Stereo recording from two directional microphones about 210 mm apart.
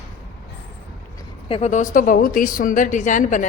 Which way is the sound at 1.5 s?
30° left (ahead or behind).